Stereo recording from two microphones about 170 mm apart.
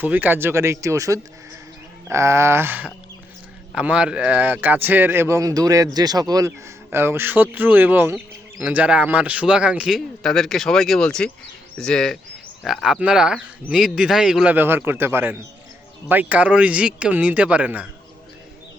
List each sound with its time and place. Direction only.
0.0 s speech: 10° right (ahead or behind)